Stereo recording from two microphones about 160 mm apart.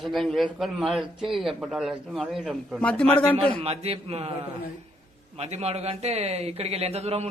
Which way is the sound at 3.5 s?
40° right (ahead or behind).